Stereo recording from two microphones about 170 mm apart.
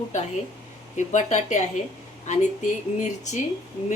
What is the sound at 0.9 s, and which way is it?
A woman's voice, 45° left (ahead or behind).